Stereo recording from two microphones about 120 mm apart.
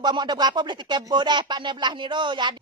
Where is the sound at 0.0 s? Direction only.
35° right (ahead or behind).